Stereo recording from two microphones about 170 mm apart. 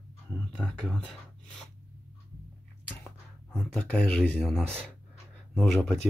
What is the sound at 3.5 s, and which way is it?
Speech, 5° left (ahead or behind).